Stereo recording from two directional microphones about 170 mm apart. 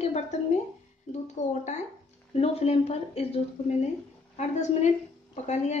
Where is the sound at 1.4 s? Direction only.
45° left (ahead or behind).